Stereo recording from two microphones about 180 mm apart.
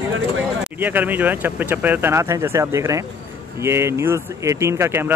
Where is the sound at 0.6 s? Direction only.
10° right (ahead or behind).